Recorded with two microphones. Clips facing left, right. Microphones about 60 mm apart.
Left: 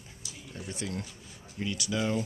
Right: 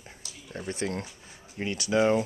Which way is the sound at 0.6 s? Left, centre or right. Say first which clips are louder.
Right 5 dB; right.